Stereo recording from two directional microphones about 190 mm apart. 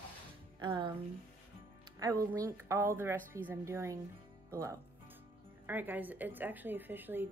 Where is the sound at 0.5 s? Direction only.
25° right (ahead or behind).